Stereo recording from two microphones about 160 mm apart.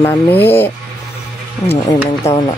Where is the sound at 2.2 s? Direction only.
15° left (ahead or behind).